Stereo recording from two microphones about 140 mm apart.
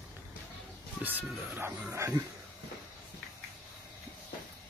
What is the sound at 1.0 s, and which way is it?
Speech, 10° right (ahead or behind).